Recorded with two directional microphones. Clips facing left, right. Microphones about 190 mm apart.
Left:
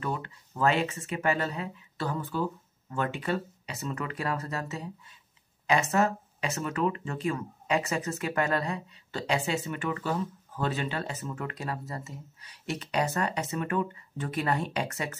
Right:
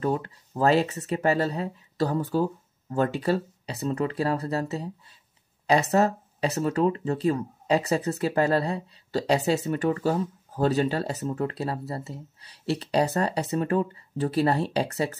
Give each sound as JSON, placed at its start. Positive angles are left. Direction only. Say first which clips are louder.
{"t": 0.0, "sound": "speech", "louder": "right 7 dB", "side_deg": -35}